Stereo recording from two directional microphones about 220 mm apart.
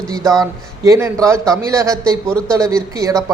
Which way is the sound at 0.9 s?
15° right (ahead or behind).